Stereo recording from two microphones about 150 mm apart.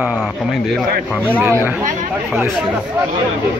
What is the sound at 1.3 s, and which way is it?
Speech, 15° right (ahead or behind).